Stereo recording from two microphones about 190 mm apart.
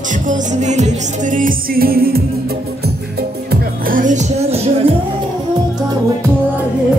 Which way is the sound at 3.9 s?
40° right (ahead or behind).